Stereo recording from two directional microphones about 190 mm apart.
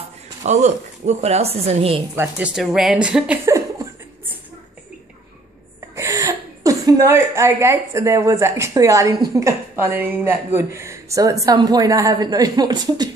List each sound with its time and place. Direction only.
0.5 s speech: 35° right (ahead or behind)
2.1 s a woman's voice: 10° right (ahead or behind)
5.9 s a woman's voice: 15° right (ahead or behind)